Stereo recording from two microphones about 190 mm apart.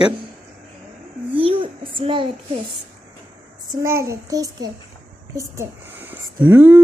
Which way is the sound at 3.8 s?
15° right (ahead or behind).